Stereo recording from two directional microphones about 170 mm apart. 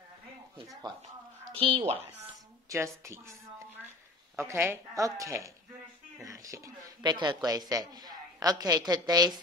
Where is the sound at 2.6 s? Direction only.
15° right (ahead or behind).